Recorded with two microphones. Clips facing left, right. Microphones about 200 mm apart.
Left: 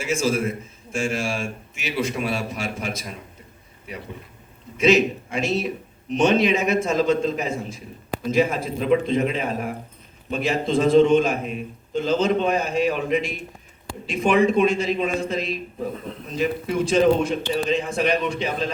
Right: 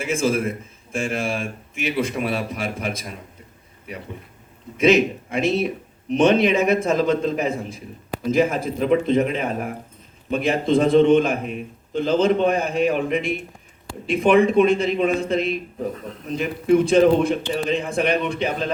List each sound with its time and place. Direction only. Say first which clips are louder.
0.0 s a man's voice: right 1 dB; 55° right (ahead or behind)
4.8 s a man's voice: right 1 dB; 55° right (ahead or behind)